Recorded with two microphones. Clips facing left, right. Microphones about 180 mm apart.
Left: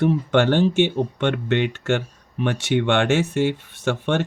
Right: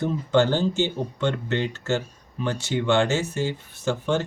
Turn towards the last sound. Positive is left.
turn(degrees=90)